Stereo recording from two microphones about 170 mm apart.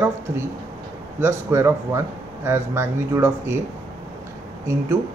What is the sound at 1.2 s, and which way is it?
Speech, 15° right (ahead or behind).